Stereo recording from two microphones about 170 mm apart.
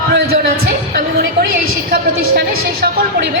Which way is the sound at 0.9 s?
65° right (ahead or behind).